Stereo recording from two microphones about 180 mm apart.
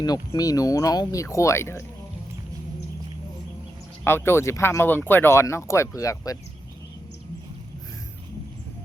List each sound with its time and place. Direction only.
0.0 s speech: 20° left (ahead or behind)
4.0 s speech: 15° left (ahead or behind)